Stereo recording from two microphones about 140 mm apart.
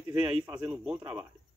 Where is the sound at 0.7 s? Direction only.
5° right (ahead or behind).